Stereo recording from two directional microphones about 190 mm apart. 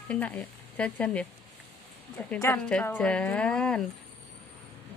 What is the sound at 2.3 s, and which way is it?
Speech, 10° left (ahead or behind).